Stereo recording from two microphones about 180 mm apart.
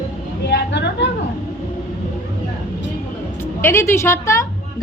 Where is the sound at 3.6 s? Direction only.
15° left (ahead or behind).